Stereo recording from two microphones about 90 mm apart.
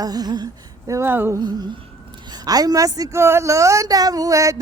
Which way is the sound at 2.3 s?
45° right (ahead or behind).